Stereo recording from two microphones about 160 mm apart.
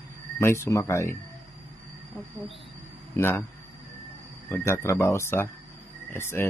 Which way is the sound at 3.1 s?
15° left (ahead or behind).